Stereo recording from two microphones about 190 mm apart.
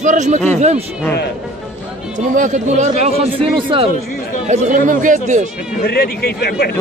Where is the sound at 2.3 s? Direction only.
40° right (ahead or behind).